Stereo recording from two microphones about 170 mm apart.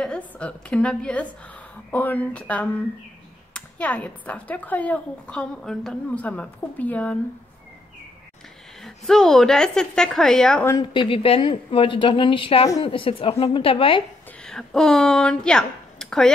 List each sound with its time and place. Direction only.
0.0 s a woman's voice: 5° left (ahead or behind)
8.8 s a woman's voice: centre (ahead or behind)
10.8 s a woman's voice: 30° left (ahead or behind)
14.4 s a woman's voice: 5° left (ahead or behind)